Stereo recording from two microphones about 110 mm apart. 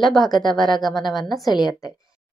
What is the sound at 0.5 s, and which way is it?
Speech, 40° left (ahead or behind).